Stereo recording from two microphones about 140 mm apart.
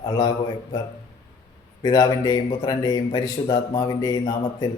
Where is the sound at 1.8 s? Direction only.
30° left (ahead or behind).